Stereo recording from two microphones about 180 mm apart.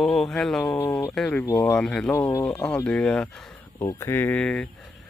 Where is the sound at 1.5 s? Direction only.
20° left (ahead or behind).